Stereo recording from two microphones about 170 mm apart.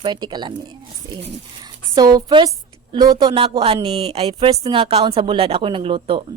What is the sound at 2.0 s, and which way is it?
Speech, 25° right (ahead or behind).